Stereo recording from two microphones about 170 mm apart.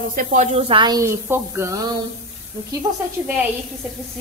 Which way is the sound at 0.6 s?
30° right (ahead or behind).